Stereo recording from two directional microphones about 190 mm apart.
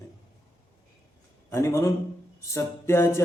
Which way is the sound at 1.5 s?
15° left (ahead or behind).